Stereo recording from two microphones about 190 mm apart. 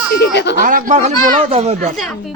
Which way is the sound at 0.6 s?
45° right (ahead or behind).